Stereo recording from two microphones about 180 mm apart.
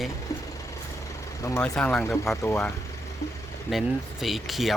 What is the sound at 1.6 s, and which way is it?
Speech, 5° left (ahead or behind).